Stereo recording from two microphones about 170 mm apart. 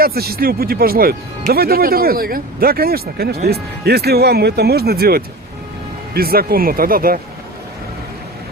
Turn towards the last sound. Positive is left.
turn(degrees=-60)  # may be behind; listen again after turning